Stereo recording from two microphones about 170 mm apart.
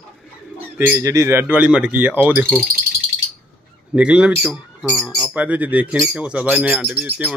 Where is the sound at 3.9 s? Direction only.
5° right (ahead or behind).